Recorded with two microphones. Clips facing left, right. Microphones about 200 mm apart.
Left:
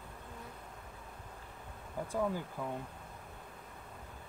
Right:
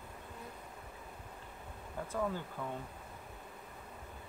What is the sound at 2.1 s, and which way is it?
Speech, 10° left (ahead or behind).